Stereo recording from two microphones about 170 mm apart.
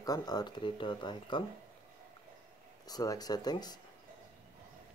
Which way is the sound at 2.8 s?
20° left (ahead or behind).